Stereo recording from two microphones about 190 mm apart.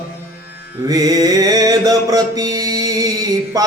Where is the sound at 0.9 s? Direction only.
20° right (ahead or behind).